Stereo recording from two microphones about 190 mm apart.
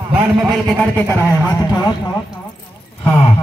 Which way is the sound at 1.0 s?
15° left (ahead or behind).